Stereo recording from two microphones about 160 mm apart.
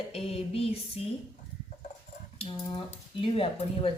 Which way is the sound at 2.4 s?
30° left (ahead or behind).